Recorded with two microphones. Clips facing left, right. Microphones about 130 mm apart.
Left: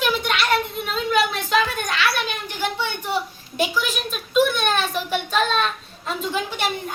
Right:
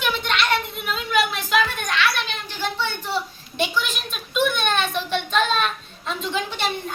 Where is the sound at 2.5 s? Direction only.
15° left (ahead or behind).